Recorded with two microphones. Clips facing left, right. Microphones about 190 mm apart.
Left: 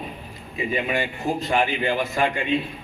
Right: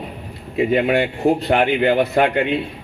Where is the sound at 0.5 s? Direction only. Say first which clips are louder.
Right 8 dB; 65° right (ahead or behind).